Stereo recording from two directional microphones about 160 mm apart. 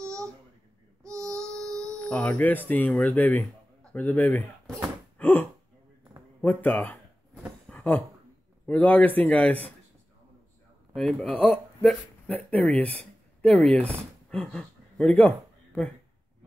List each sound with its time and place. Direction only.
1.0 s child singing: 20° right (ahead or behind)
1.7 s a sound: 20° right (ahead or behind)
2.0 s a man's voice: 5° left (ahead or behind)
7.7 s a sound: 10° left (ahead or behind)
8.6 s a man's voice: 10° left (ahead or behind)
11.0 s speech: centre (ahead or behind)